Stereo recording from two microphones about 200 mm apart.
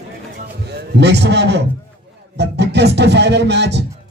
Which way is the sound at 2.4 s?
60° right (ahead or behind).